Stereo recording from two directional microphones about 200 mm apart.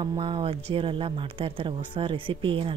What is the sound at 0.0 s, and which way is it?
Speech, 25° right (ahead or behind).